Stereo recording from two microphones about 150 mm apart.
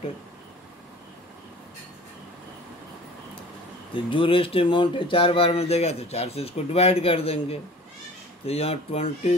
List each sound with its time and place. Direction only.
3.9 s speech: 35° left (ahead or behind)